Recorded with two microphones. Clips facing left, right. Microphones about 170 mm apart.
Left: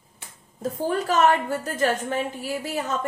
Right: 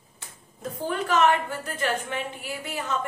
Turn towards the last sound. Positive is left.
turn(degrees=40)  # may be behind; listen again after turning